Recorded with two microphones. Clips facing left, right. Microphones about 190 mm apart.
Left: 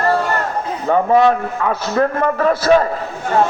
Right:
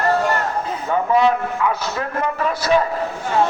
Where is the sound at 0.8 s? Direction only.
40° left (ahead or behind).